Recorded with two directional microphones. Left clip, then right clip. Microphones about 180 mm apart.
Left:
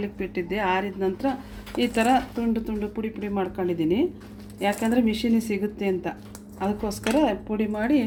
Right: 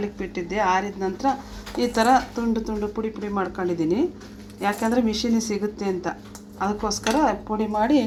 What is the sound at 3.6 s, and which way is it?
A woman's voice, 45° left (ahead or behind).